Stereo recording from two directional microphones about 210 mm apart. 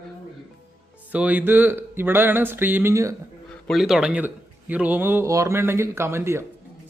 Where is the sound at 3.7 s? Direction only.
Centre (ahead or behind).